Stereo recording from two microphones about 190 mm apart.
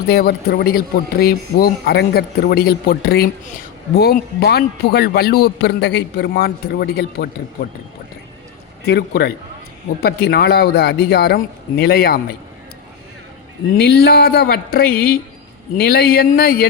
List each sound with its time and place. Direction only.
0.1 s a man's voice: 55° left (ahead or behind)
8.8 s a man's voice: 55° left (ahead or behind)
13.7 s speech: 55° left (ahead or behind)